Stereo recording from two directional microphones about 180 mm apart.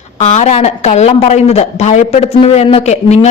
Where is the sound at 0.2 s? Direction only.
40° left (ahead or behind).